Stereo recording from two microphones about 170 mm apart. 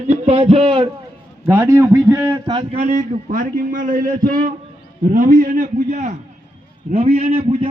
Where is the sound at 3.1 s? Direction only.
50° right (ahead or behind).